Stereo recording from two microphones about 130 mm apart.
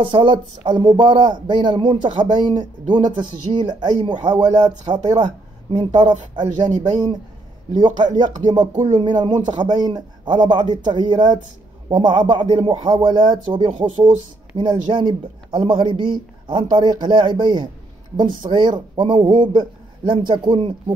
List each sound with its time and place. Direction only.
0.0 s speech: 40° right (ahead or behind)
13.7 s speech: 55° right (ahead or behind)
14.6 s speech: 40° right (ahead or behind)